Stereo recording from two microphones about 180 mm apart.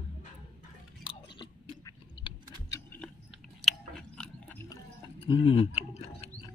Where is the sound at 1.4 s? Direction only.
25° left (ahead or behind).